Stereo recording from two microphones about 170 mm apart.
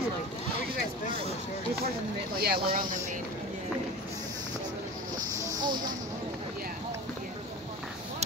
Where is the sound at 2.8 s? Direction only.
50° right (ahead or behind).